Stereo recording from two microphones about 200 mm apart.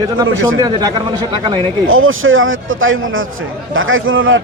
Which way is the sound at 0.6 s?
20° right (ahead or behind).